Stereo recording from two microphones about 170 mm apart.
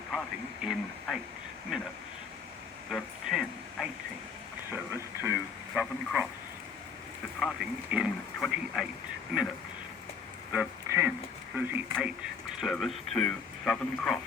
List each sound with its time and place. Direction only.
0.1 s speech: centre (ahead or behind)
2.9 s a sound: 5° right (ahead or behind)
4.7 s speech: 15° right (ahead or behind)
5.8 s speech: centre (ahead or behind)
7.3 s speech: centre (ahead or behind)
10.5 s speech: 10° right (ahead or behind)
12.5 s speech: centre (ahead or behind)